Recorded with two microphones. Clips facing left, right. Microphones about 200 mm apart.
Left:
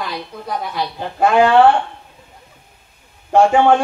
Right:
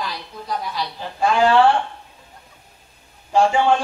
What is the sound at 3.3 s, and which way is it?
Female singing, 55° left (ahead or behind).